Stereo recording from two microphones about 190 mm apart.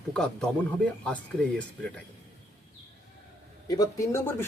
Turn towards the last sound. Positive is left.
turn(degrees=15)  # may be behind; listen again after turning